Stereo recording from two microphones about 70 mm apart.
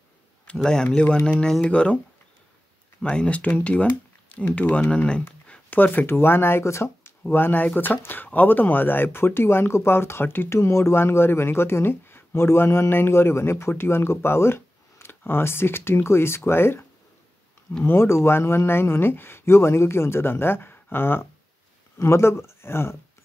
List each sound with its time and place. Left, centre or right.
0.5 s speech: centre
0.8 s speech: left
3.0 s speech: centre; by 16.8 s left
17.8 s speech: left